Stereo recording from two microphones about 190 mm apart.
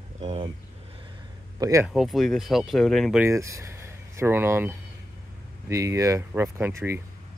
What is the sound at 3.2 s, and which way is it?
Speech, 15° right (ahead or behind).